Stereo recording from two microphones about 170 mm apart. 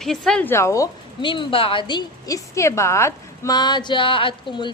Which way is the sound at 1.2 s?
30° left (ahead or behind).